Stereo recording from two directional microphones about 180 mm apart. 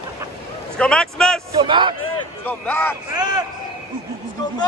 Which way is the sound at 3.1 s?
20° right (ahead or behind).